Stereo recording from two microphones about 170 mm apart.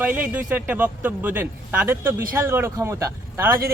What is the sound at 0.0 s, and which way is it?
Speech, 10° right (ahead or behind).